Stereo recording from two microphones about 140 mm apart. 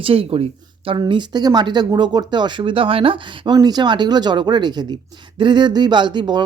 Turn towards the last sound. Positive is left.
turn(degrees=-30)  # may be behind; listen again after turning